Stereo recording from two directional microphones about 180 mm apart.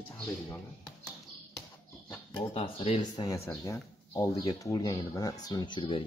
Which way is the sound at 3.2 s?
20° left (ahead or behind).